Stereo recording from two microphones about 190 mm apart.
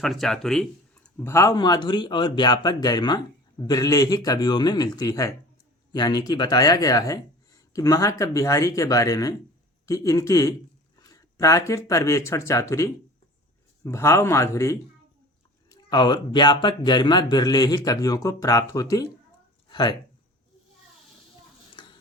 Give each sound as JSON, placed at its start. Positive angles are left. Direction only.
{"t": 0.0, "sound": "speech", "side_deg": 0}
{"t": 1.2, "sound": "speech", "side_deg": 15}
{"t": 19.6, "sound": "a sound", "side_deg": 20}